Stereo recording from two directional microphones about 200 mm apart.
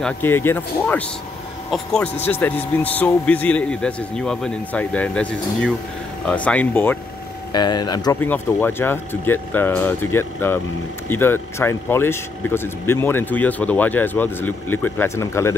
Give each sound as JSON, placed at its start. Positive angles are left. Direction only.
{"t": 0.0, "sound": "a man's voice", "side_deg": 10}
{"t": 7.5, "sound": "speech", "side_deg": 20}